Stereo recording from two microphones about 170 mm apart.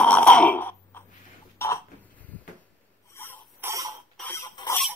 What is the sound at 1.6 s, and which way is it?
Cough, 15° left (ahead or behind).